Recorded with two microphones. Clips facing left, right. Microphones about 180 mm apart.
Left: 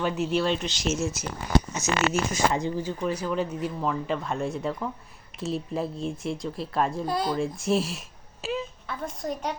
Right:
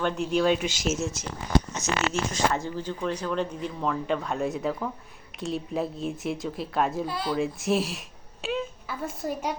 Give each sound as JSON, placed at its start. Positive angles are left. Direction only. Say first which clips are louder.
{"t": 0.0, "sound": "speech", "louder": "right 1 dB", "side_deg": 5}
{"t": 2.1, "sound": "speech", "louder": "left 1 dB", "side_deg": 10}
{"t": 7.1, "sound": "speech", "louder": "left 3 dB", "side_deg": 40}
{"t": 7.3, "sound": "a woman's voice", "louder": "even", "side_deg": 0}